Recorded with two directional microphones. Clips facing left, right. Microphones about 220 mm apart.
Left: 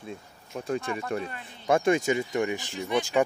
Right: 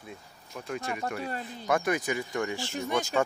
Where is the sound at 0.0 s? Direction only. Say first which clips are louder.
Left 5 dB; 30° left (ahead or behind).